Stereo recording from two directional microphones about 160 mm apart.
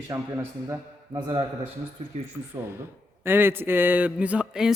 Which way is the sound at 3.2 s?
15° right (ahead or behind).